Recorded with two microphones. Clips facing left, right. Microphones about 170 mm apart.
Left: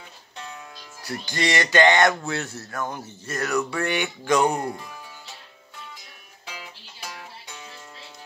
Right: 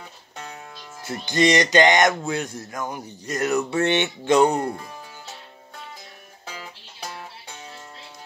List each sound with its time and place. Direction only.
1.0 s speech: 20° right (ahead or behind)
6.5 s music: 40° right (ahead or behind)